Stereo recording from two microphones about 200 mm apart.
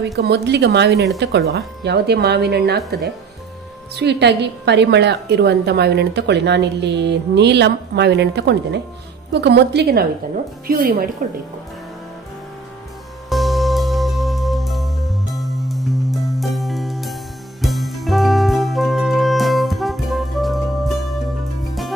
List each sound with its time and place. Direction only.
0.0 s a woman's voice: 60° right (ahead or behind)
3.9 s a woman's voice: 55° right (ahead or behind)
13.3 s music: centre (ahead or behind)